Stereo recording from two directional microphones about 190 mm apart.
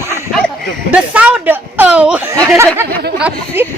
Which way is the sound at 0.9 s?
5° right (ahead or behind).